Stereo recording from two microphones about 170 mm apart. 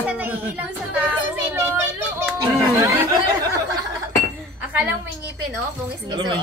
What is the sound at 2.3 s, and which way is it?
Chatter, 20° right (ahead or behind).